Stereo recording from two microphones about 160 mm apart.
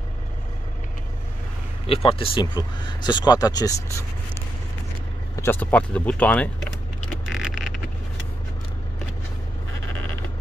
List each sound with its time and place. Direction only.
1.9 s speech: 35° left (ahead or behind)
5.3 s speech: 15° left (ahead or behind)
7.3 s vehicle: centre (ahead or behind)